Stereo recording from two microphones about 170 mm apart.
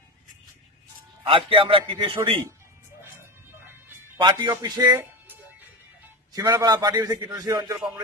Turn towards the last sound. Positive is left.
turn(degrees=-20)  # may be behind; listen again after turning